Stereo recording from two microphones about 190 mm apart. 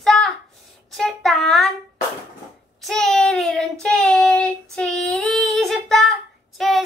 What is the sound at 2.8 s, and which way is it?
Child singing, centre (ahead or behind).